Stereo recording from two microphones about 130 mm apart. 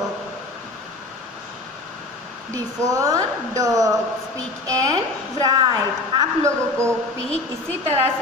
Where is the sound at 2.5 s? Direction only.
25° right (ahead or behind).